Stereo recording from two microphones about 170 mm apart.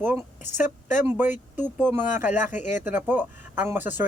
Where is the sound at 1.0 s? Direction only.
10° right (ahead or behind).